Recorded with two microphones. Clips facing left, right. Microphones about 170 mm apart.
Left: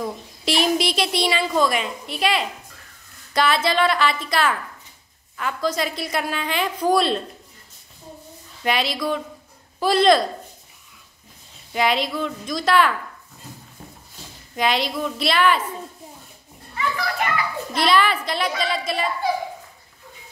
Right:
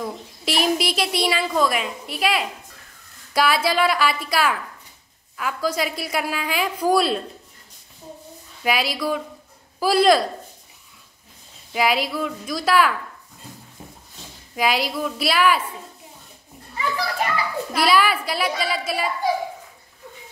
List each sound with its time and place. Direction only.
0.0 s a woman's voice: centre (ahead or behind)
8.6 s a woman's voice: 5° right (ahead or behind)
11.7 s a woman's voice: 5° right (ahead or behind)
14.5 s a woman's voice: 5° right (ahead or behind)
16.7 s children playing: 35° right (ahead or behind)
17.7 s a woman's voice: 5° right (ahead or behind)